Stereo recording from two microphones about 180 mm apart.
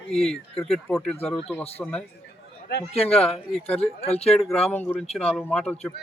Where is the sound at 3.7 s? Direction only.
35° left (ahead or behind).